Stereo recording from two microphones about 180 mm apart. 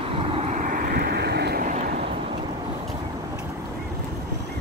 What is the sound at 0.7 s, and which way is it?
Vehicle, 60° right (ahead or behind).